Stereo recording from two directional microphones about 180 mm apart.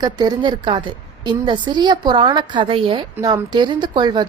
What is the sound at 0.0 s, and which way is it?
Speech, 25° right (ahead or behind).